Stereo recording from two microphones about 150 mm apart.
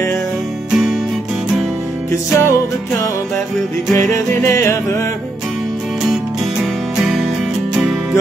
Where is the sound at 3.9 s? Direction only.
15° left (ahead or behind).